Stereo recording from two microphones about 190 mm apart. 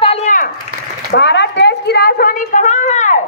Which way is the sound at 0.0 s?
30° left (ahead or behind).